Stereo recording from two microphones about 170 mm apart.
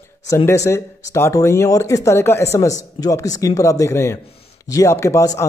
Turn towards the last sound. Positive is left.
turn(degrees=20)  # may be behind; listen again after turning